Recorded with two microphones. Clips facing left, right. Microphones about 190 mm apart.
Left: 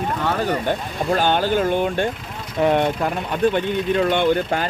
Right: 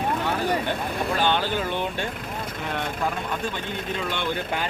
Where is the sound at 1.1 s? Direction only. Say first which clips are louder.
Left 7 dB; 45° left (ahead or behind).